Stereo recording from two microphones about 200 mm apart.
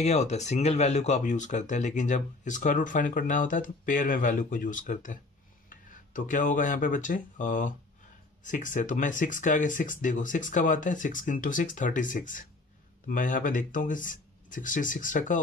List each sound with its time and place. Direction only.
0.0 s speech: 35° left (ahead or behind)